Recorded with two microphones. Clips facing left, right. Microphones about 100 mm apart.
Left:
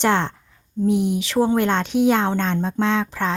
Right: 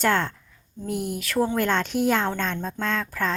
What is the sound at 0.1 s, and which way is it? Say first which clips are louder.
Speech: left 3 dB; 25° left (ahead or behind).